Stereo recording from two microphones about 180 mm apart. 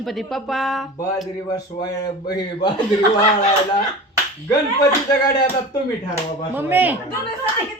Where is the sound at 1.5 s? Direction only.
20° left (ahead or behind).